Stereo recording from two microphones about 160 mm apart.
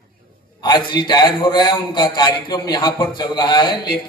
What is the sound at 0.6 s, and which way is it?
A man's voice, 30° left (ahead or behind).